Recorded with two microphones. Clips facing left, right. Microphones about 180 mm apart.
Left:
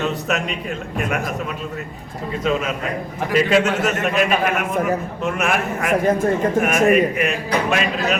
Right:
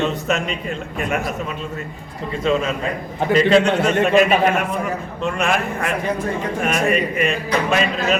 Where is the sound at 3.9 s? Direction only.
30° right (ahead or behind).